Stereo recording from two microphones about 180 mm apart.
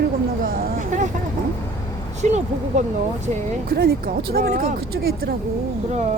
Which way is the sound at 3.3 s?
55° right (ahead or behind).